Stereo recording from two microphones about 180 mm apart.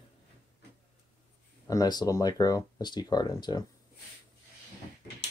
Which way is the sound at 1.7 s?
20° left (ahead or behind).